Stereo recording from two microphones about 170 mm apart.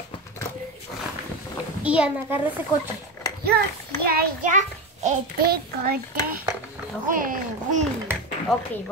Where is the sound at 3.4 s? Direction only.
65° right (ahead or behind); by 5.2 s 45° right (ahead or behind).